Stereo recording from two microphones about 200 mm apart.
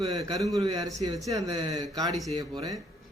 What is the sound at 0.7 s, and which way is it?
Speech, 15° right (ahead or behind).